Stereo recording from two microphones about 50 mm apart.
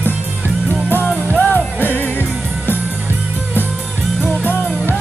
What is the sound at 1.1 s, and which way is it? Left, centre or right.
Music, left.